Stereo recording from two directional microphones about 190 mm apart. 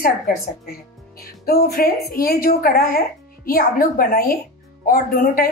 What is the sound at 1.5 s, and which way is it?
A woman's voice, 50° left (ahead or behind).